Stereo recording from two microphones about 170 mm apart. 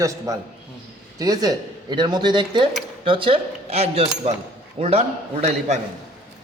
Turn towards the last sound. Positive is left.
turn(degrees=-40)  # may be behind; listen again after turning